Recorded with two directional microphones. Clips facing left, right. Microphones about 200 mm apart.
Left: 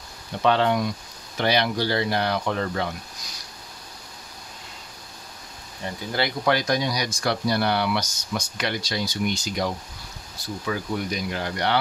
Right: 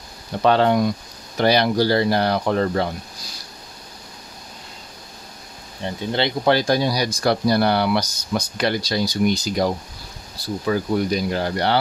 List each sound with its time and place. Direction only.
0.4 s speech: 40° right (ahead or behind)
5.8 s speech: 25° right (ahead or behind)